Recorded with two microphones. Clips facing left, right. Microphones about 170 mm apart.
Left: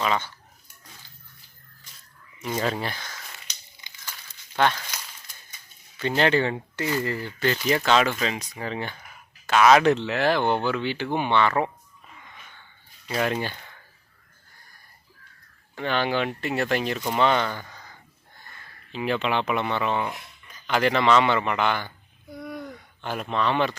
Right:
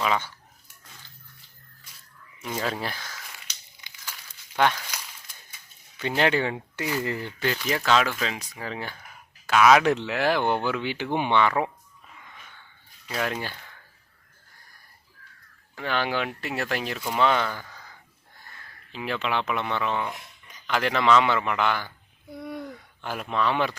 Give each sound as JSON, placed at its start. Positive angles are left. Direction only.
{"t": 0.0, "sound": "speech", "side_deg": -10}
{"t": 2.4, "sound": "speech", "side_deg": 0}
{"t": 4.5, "sound": "speech", "side_deg": -10}
{"t": 6.0, "sound": "speech", "side_deg": -10}
{"t": 13.1, "sound": "speech", "side_deg": 0}
{"t": 15.7, "sound": "speech", "side_deg": -5}
{"t": 22.4, "sound": "a sound", "side_deg": -25}
{"t": 22.6, "sound": "speech", "side_deg": -5}